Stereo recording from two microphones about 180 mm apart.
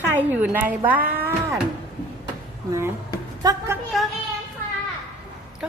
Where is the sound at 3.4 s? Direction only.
20° right (ahead or behind).